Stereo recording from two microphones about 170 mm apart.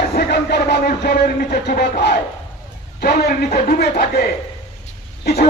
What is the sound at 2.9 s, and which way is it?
Speech, 65° left (ahead or behind).